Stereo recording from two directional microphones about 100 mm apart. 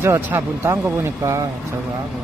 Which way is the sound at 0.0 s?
25° right (ahead or behind).